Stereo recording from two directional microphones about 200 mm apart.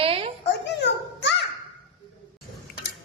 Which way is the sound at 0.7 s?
60° left (ahead or behind).